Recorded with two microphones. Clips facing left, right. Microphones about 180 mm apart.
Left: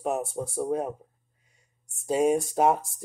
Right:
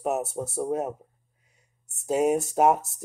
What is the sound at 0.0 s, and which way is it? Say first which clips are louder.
Speech: right 1 dB; 5° right (ahead or behind).